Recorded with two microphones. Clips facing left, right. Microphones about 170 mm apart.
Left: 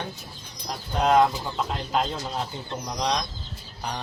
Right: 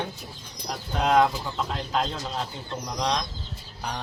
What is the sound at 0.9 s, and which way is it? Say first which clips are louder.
Speech: left 1 dB; centre (ahead or behind).